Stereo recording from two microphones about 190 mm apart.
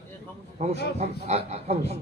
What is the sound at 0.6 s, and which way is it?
A man's voice, 35° right (ahead or behind).